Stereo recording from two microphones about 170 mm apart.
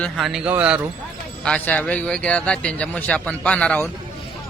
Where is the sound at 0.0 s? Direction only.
Centre (ahead or behind).